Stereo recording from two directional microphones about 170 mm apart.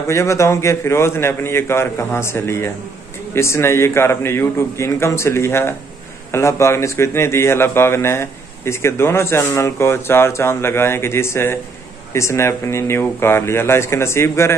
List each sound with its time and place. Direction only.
0.1 s a man's voice: 15° left (ahead or behind)